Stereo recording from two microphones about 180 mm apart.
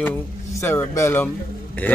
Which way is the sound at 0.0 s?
15° left (ahead or behind).